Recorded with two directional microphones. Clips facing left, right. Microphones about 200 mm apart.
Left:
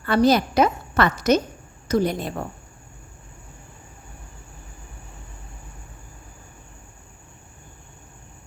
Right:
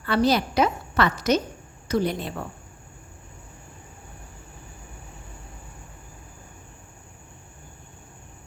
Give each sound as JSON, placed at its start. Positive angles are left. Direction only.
{"t": 0.0, "sound": "a woman's voice", "side_deg": 45}